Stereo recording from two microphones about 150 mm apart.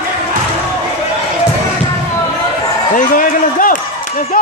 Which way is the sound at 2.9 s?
65° left (ahead or behind).